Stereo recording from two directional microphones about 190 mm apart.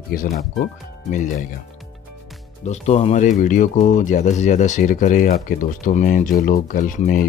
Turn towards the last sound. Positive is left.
turn(degrees=45)  # may be behind; listen again after turning